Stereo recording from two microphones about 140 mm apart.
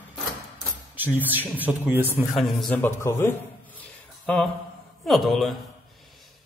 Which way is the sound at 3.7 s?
10° left (ahead or behind).